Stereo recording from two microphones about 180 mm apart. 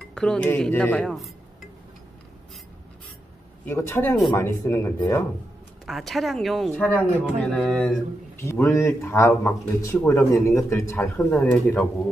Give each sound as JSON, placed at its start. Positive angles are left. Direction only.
{"t": 0.1, "sound": "speech", "side_deg": 5}
{"t": 3.6, "sound": "speech", "side_deg": 15}
{"t": 5.9, "sound": "speech", "side_deg": 0}
{"t": 8.4, "sound": "a man's voice", "side_deg": 15}
{"t": 11.1, "sound": "speech", "side_deg": 5}